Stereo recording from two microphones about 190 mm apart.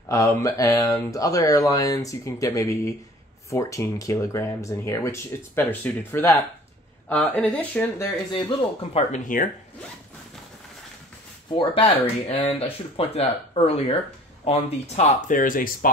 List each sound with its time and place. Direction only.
0.1 s speech: 15° left (ahead or behind)
8.9 s speech: 40° left (ahead or behind)
11.5 s speech: 30° left (ahead or behind); by 15.9 s 45° left (ahead or behind)